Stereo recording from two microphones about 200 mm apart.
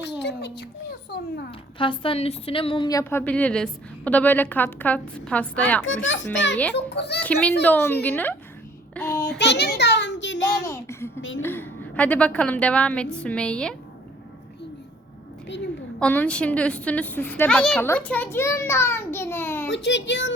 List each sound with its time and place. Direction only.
0.0 s a sound: 60° left (ahead or behind)
1.5 s a woman's voice: 25° left (ahead or behind)
3.0 s a woman's voice: 10° left (ahead or behind)
6.1 s a woman's voice: 65° left (ahead or behind)
7.2 s a woman's voice: 5° left (ahead or behind)
9.0 s child singing: 10° left (ahead or behind)
9.4 s a child's voice: 55° left (ahead or behind)
10.7 s a child's voice: 15° left (ahead or behind)
11.2 s speech: 70° left (ahead or behind)
11.4 s a woman's voice: 10° left (ahead or behind)
16.0 s a woman's voice: 5° left (ahead or behind)
19.6 s a woman's voice: 60° left (ahead or behind)